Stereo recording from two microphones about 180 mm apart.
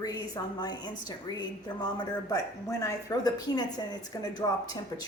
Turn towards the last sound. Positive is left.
turn(degrees=20)  # may be behind; listen again after turning